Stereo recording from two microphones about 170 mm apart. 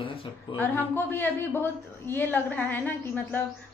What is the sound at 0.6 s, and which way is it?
A woman's voice, 10° left (ahead or behind).